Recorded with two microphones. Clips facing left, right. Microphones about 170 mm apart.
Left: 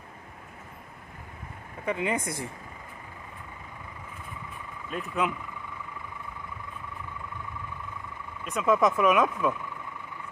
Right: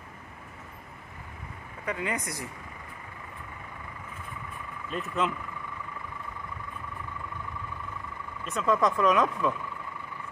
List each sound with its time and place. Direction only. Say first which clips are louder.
1.9 s speech: left 4 dB; 20° left (ahead or behind)
5.0 s speech: left 1 dB; 10° left (ahead or behind)
8.5 s speech: left 2 dB; centre (ahead or behind)